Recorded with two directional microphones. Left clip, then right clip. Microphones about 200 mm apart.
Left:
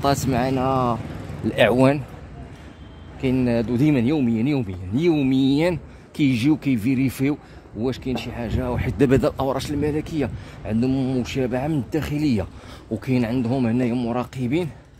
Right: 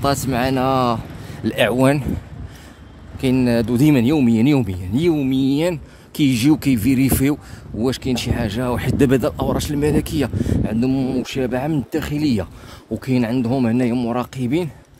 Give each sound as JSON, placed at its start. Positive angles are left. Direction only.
{"t": 0.0, "sound": "speech", "side_deg": -5}
{"t": 1.4, "sound": "speech", "side_deg": 0}
{"t": 3.2, "sound": "speech", "side_deg": -25}
{"t": 4.9, "sound": "speech", "side_deg": -10}
{"t": 8.9, "sound": "speech", "side_deg": -10}
{"t": 9.8, "sound": "speech", "side_deg": -20}